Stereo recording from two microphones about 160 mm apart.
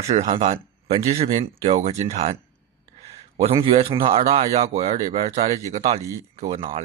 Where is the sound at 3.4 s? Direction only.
35° right (ahead or behind).